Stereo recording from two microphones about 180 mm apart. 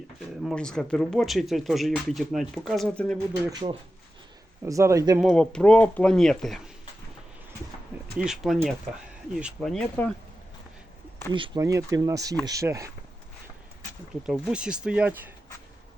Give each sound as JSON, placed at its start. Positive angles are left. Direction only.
{"t": 0.4, "sound": "speech", "side_deg": 5}
{"t": 3.5, "sound": "speech", "side_deg": -25}
{"t": 4.6, "sound": "speech", "side_deg": -15}
{"t": 5.2, "sound": "speech", "side_deg": 5}
{"t": 8.2, "sound": "speech", "side_deg": 0}
{"t": 11.3, "sound": "speech", "side_deg": -25}
{"t": 14.3, "sound": "speech", "side_deg": -5}